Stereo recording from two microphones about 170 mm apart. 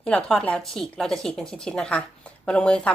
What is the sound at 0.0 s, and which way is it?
Speech, 5° left (ahead or behind).